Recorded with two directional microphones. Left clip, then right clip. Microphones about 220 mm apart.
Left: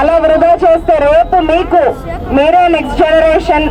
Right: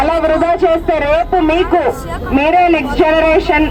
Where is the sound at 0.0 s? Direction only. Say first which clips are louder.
Left 4 dB; 55° left (ahead or behind).